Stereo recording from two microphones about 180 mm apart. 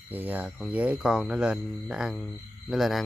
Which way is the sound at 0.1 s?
10° right (ahead or behind).